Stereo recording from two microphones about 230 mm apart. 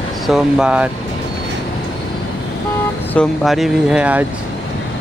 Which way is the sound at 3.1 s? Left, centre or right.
Centre.